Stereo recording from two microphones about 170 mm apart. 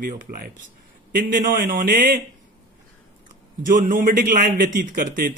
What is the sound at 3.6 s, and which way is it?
Speech, 55° right (ahead or behind).